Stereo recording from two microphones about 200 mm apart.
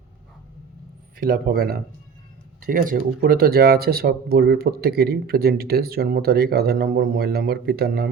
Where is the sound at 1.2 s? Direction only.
50° right (ahead or behind).